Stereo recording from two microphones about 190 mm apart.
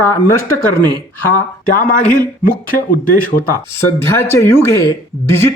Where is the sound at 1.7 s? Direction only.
50° left (ahead or behind).